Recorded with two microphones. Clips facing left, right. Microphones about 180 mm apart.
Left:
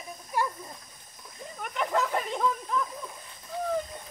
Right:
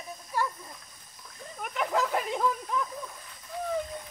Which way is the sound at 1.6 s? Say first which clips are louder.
Even; 5° right (ahead or behind).